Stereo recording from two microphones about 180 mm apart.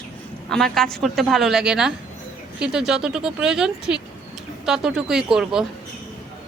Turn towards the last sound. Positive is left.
turn(degrees=-5)  # may be behind; listen again after turning